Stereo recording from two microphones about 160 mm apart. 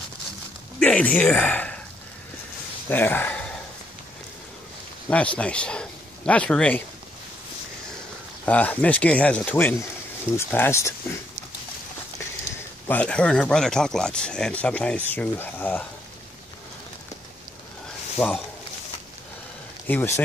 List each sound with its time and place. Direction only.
0.7 s speech: 5° left (ahead or behind)
2.9 s speech: 15° left (ahead or behind)
5.1 s a man's voice: 5° left (ahead or behind)
8.5 s a man's voice: 10° left (ahead or behind)
12.8 s speech: 10° left (ahead or behind)
18.2 s a man's voice: 15° left (ahead or behind)
19.9 s a man's voice: 15° left (ahead or behind)